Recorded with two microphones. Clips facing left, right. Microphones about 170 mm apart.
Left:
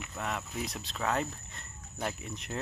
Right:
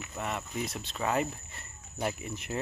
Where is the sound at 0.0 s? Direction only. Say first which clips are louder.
Right 1 dB; centre (ahead or behind).